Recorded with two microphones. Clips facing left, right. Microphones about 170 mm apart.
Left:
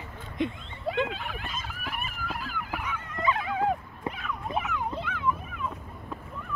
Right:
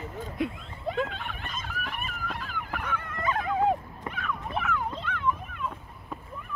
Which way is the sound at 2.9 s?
60° right (ahead or behind).